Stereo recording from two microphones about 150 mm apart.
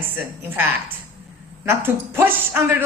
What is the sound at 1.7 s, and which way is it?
Speech, 15° right (ahead or behind).